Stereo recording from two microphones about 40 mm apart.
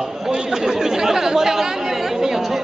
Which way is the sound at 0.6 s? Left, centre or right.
Centre.